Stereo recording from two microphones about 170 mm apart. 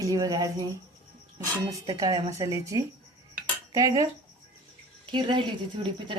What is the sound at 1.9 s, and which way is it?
Speech, 20° right (ahead or behind).